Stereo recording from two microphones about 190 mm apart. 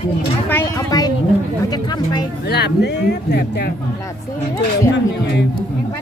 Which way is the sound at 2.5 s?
60° left (ahead or behind).